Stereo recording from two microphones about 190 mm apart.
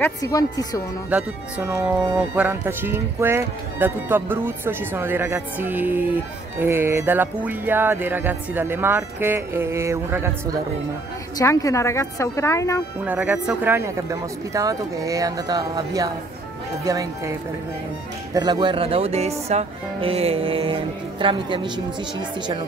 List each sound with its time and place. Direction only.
0.0 s speech: 20° left (ahead or behind)
1.1 s speech: 10° right (ahead or behind)
11.3 s a woman's voice: 15° left (ahead or behind)
13.0 s speech: 10° right (ahead or behind)
18.3 s speech: 20° right (ahead or behind)